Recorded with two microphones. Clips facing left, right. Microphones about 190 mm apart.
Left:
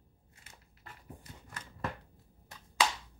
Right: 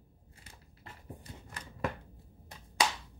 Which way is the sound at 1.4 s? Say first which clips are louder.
Right 3 dB; 20° right (ahead or behind).